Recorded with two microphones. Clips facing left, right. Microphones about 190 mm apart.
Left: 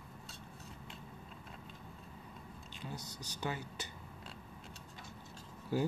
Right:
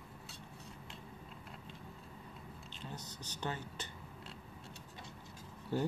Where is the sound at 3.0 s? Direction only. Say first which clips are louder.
Left 1 dB; 40° left (ahead or behind).